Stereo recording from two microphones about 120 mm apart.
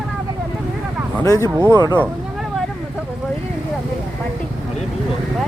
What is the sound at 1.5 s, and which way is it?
Speech, 25° right (ahead or behind).